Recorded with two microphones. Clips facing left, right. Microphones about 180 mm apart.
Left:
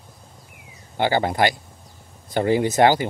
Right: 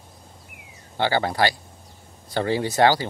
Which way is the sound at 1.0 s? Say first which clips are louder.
Left 2 dB; 20° left (ahead or behind).